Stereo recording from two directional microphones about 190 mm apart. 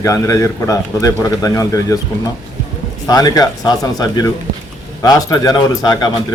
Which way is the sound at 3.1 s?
20° left (ahead or behind).